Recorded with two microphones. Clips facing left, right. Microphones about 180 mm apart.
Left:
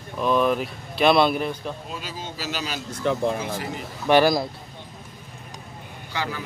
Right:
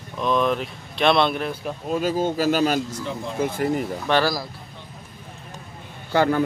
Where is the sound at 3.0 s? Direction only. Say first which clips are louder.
Left 7 dB; 60° left (ahead or behind).